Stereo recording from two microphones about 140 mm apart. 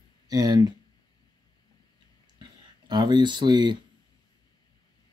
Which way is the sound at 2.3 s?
30° right (ahead or behind).